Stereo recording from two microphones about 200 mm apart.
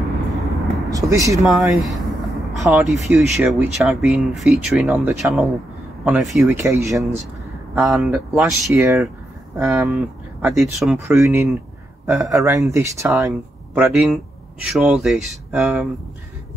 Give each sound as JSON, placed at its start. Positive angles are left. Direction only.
{"t": 0.3, "sound": "vehicle", "side_deg": 0}
{"t": 0.8, "sound": "speech", "side_deg": -15}
{"t": 1.4, "sound": "speech", "side_deg": 0}
{"t": 6.6, "sound": "speech", "side_deg": -15}
{"t": 7.7, "sound": "speech", "side_deg": -5}
{"t": 8.6, "sound": "speech", "side_deg": -15}
{"t": 11.1, "sound": "speech", "side_deg": -15}
{"t": 13.7, "sound": "speech", "side_deg": 0}